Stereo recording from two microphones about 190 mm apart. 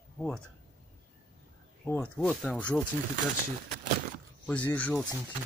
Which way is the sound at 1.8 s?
10° left (ahead or behind).